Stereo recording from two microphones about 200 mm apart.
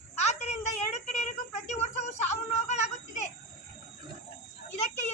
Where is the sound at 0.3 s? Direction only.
35° left (ahead or behind).